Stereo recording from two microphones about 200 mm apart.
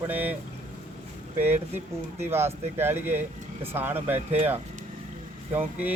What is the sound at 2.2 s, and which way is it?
Speech, 10° right (ahead or behind).